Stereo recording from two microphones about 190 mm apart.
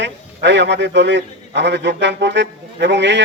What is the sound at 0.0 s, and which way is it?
A man's voice, 65° right (ahead or behind).